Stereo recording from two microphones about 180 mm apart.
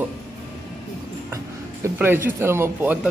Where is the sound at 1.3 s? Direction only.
15° right (ahead or behind).